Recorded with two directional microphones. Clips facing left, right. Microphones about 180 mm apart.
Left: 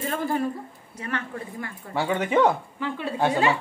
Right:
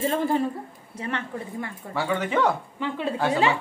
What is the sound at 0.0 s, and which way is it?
Speech, 25° right (ahead or behind).